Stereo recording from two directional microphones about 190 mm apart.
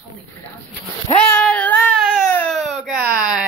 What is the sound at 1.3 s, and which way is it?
Baby cry, 5° left (ahead or behind).